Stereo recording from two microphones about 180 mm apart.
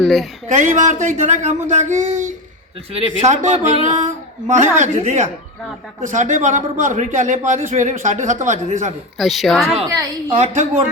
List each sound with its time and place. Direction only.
0.0 s a man's voice: centre (ahead or behind)
0.4 s speech: 45° right (ahead or behind)
9.1 s a woman's voice: centre (ahead or behind)
10.3 s speech: 40° right (ahead or behind)